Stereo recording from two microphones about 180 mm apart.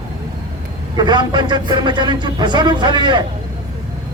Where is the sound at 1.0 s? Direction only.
25° right (ahead or behind).